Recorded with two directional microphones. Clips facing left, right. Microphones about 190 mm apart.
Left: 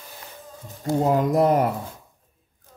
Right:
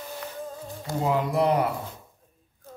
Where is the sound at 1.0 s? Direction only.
45° left (ahead or behind).